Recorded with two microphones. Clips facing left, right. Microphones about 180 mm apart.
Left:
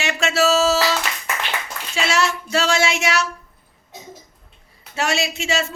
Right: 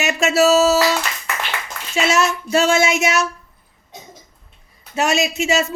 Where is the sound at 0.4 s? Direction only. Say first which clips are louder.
Right 3 dB; 40° right (ahead or behind).